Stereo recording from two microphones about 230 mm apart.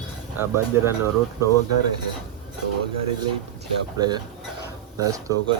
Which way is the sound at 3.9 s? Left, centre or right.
Centre.